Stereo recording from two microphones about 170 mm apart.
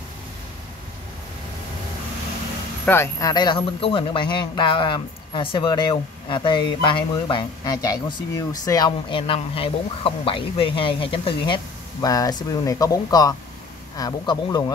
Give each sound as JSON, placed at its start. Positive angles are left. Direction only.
{"t": 2.8, "sound": "a man's voice", "side_deg": 15}